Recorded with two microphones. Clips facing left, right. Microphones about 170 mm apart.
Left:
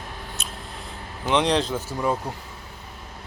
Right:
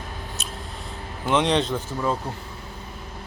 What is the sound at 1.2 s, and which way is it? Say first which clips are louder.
Speech: even; centre (ahead or behind).